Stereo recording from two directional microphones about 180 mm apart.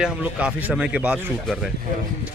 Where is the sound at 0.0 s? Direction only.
5° right (ahead or behind).